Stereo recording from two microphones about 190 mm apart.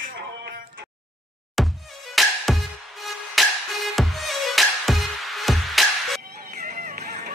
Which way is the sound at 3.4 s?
Centre (ahead or behind).